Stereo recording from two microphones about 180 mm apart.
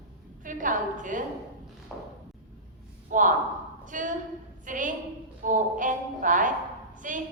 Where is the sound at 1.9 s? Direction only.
Centre (ahead or behind).